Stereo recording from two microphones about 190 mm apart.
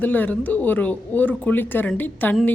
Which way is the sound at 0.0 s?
10° left (ahead or behind).